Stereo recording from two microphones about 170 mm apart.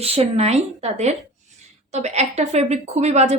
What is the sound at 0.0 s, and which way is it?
A woman's voice, 35° right (ahead or behind).